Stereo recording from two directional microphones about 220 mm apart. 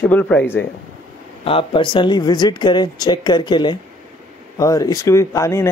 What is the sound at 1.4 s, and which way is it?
Speech, 25° left (ahead or behind).